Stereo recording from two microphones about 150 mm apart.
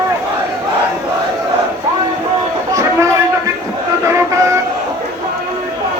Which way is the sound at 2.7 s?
20° right (ahead or behind).